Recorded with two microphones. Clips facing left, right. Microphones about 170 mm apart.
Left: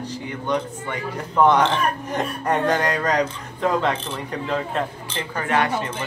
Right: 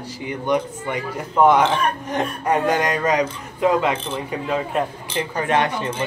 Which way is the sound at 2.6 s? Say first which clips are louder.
Right 1 dB; 10° right (ahead or behind).